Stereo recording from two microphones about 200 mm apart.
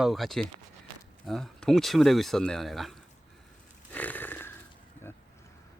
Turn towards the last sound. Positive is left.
turn(degrees=10)  # may be behind; listen again after turning